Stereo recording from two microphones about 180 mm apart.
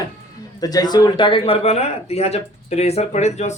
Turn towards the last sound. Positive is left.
turn(degrees=40)  # may be behind; listen again after turning